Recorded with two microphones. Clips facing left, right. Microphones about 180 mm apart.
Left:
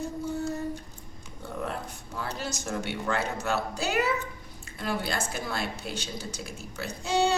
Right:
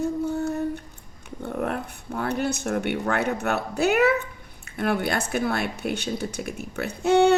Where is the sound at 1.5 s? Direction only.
60° right (ahead or behind).